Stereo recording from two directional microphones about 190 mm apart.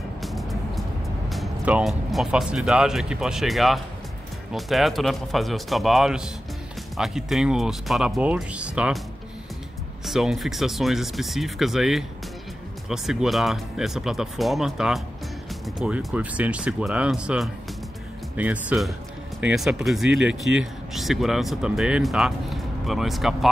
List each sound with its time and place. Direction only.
0.2 s music: centre (ahead or behind)
1.3 s speech: 5° right (ahead or behind)
10.0 s speech: centre (ahead or behind)